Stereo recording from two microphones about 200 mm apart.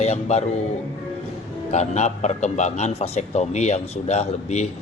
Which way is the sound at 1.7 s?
35° left (ahead or behind).